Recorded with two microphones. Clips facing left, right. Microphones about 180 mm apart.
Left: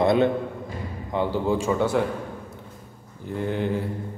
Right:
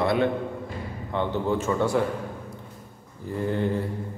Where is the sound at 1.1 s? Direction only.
10° left (ahead or behind).